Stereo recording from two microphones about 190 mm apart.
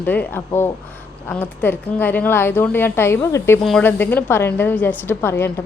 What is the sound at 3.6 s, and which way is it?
A woman's voice, 5° left (ahead or behind).